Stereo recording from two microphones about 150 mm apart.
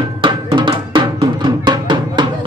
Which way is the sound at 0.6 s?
30° right (ahead or behind).